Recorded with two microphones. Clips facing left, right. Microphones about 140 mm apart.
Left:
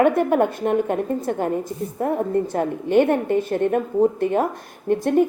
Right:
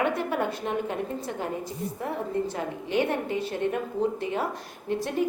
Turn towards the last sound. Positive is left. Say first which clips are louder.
# left 9 dB
turn(degrees=55)  # may be behind; listen again after turning